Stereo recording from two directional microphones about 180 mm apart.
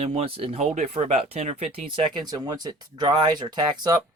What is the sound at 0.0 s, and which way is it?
Speech, 35° right (ahead or behind).